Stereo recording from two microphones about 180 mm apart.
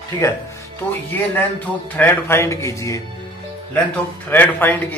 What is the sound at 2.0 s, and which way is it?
Speech, 15° left (ahead or behind).